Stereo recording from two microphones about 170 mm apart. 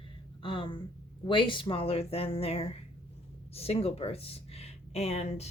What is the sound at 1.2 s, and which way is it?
Speech, 30° left (ahead or behind).